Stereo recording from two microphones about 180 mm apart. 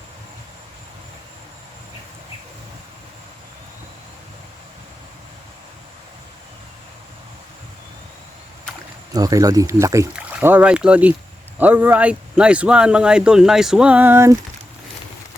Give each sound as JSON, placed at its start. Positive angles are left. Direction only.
{"t": 9.1, "sound": "speech", "side_deg": -20}